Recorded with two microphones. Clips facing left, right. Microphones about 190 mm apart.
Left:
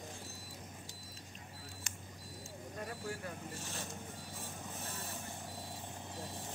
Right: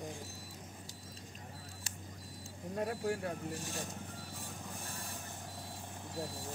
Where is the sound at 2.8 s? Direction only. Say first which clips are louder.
Right 8 dB; 65° right (ahead or behind).